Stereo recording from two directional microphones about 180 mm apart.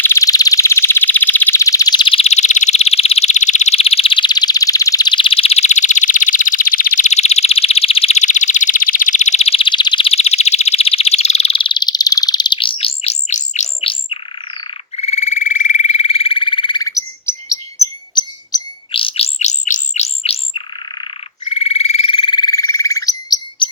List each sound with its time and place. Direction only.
0.0 s alarm: 15° left (ahead or behind); by 14.2 s 30° left (ahead or behind)
14.9 s frog: 35° left (ahead or behind); by 17.6 s 20° left (ahead or behind)
18.1 s bird: 25° left (ahead or behind)
21.5 s frog: 35° left (ahead or behind)